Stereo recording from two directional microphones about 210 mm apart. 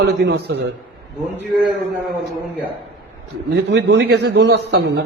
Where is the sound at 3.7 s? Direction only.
55° right (ahead or behind).